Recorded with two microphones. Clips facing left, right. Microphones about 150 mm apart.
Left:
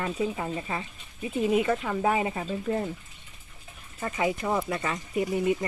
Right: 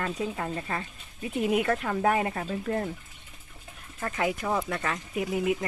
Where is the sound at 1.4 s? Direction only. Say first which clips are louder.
Left 1 dB; 5° right (ahead or behind).